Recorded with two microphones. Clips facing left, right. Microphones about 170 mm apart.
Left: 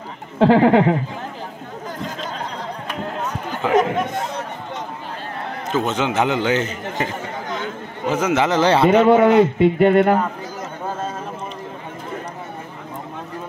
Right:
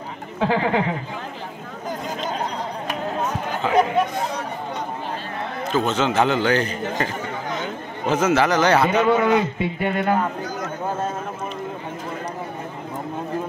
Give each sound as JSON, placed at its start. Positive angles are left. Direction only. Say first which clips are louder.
{"t": 0.4, "sound": "speech", "louder": "left 8 dB", "side_deg": 55}
{"t": 5.7, "sound": "a man's voice", "louder": "even", "side_deg": 20}
{"t": 8.1, "sound": "a man's voice", "louder": "even", "side_deg": 15}
{"t": 9.4, "sound": "speech", "louder": "left 10 dB", "side_deg": 60}